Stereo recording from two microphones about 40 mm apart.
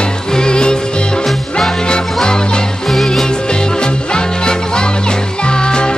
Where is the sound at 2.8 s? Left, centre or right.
Centre.